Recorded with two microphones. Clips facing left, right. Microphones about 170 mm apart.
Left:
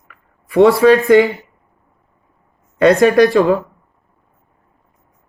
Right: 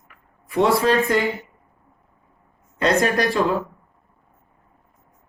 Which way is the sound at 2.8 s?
60° left (ahead or behind).